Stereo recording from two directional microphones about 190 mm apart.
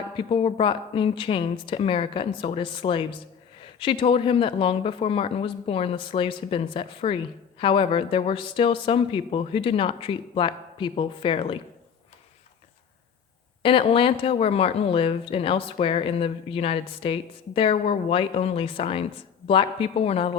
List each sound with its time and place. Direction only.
0.2 s speech: 30° left (ahead or behind)
13.6 s speech: 30° left (ahead or behind)